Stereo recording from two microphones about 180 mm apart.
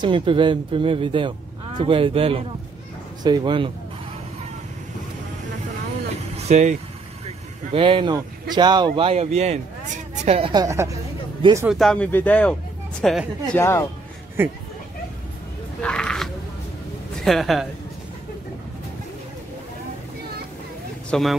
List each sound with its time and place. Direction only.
0.0 s speech: 30° right (ahead or behind)
6.5 s speech: 40° right (ahead or behind)
7.2 s a woman's voice: 30° right (ahead or behind)
10.5 s a woman's voice: 20° right (ahead or behind)
11.7 s a woman's voice: 5° left (ahead or behind)
13.6 s speech: 15° left (ahead or behind)
14.4 s a woman's voice: 10° right (ahead or behind)
15.8 s a sound: 5° left (ahead or behind)
17.2 s a woman's voice: centre (ahead or behind)
21.1 s speech: centre (ahead or behind)